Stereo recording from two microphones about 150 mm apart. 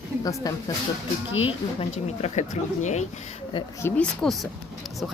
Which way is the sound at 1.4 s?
40° left (ahead or behind).